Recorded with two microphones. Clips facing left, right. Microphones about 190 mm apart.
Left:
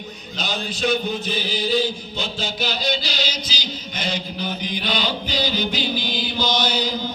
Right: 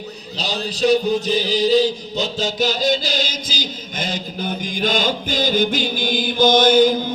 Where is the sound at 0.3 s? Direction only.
35° right (ahead or behind).